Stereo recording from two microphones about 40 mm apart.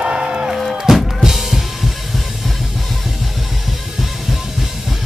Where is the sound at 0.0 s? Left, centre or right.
Right.